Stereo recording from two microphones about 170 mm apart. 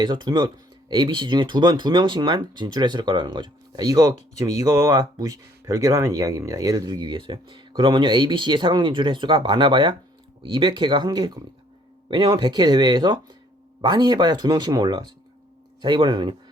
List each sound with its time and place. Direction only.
0.0 s speech: 25° right (ahead or behind)